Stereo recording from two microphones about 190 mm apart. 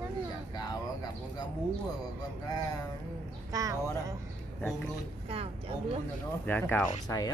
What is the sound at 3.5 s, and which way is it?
Speech, 15° right (ahead or behind).